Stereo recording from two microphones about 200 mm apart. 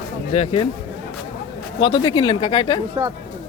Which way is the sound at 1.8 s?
25° left (ahead or behind).